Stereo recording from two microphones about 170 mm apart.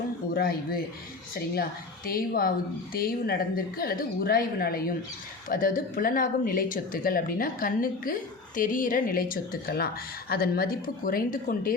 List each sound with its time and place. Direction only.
0.3 s speech: 60° left (ahead or behind)
2.0 s speech: 60° left (ahead or behind)